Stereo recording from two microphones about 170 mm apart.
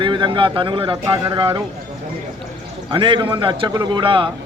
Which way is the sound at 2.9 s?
30° right (ahead or behind).